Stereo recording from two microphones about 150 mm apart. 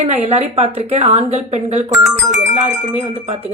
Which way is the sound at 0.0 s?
45° right (ahead or behind).